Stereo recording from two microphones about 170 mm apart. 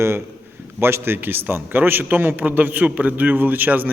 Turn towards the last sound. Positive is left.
turn(degrees=-10)  # may be behind; listen again after turning